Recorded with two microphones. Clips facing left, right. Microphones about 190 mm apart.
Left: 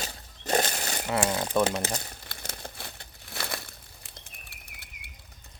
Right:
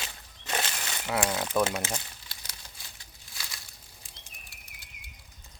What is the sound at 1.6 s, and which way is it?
Crumpling, 35° left (ahead or behind).